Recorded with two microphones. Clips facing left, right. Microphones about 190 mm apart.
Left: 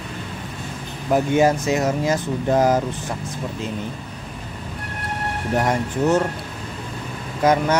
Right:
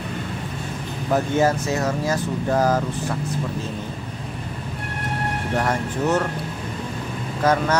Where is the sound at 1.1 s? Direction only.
15° left (ahead or behind).